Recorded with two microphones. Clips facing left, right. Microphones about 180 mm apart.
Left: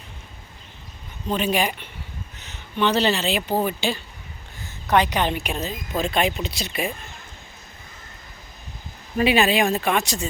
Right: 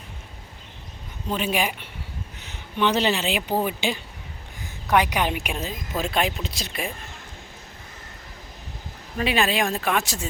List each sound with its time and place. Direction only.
1.3 s a woman's voice: 5° right (ahead or behind)
9.1 s speech: 5° left (ahead or behind)